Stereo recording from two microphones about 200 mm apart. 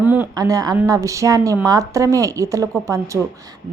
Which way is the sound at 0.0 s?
10° right (ahead or behind).